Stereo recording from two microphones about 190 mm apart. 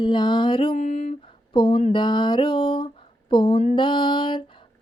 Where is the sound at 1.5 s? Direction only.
25° left (ahead or behind).